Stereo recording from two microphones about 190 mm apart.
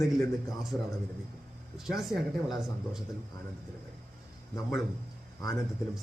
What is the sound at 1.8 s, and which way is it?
A man's voice, centre (ahead or behind).